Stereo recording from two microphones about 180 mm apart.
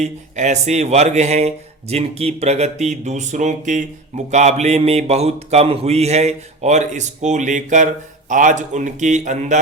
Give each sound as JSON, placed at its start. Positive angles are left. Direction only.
{"t": 0.0, "sound": "a man's voice", "side_deg": -40}